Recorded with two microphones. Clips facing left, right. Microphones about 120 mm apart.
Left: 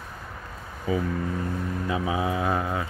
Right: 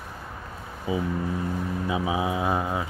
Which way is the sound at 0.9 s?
15° right (ahead or behind).